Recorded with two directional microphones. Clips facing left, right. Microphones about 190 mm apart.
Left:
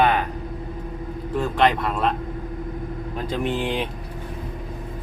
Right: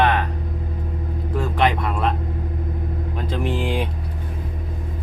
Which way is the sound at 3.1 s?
Centre (ahead or behind).